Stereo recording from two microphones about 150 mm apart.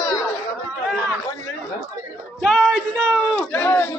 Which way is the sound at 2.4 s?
Centre (ahead or behind).